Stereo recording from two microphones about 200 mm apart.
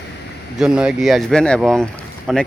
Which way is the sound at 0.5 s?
5° right (ahead or behind).